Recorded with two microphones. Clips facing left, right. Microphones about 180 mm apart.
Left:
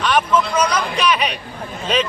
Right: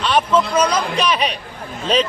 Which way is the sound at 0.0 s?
30° right (ahead or behind).